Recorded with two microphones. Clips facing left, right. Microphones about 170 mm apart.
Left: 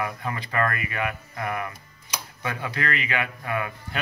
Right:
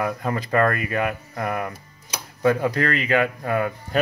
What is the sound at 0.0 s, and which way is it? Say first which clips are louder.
Speech: right 5 dB; 40° right (ahead or behind).